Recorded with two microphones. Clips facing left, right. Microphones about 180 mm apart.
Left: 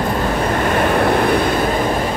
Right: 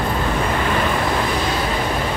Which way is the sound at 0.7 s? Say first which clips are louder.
Left 5 dB; 55° left (ahead or behind).